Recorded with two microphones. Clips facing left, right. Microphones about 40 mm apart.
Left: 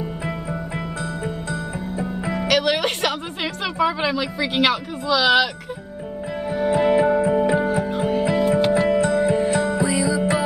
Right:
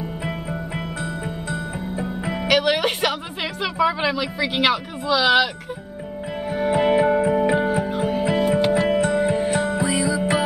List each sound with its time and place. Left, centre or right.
1.5 s music: centre
3.7 s speech: centre
6.5 s music: centre
8.8 s music: centre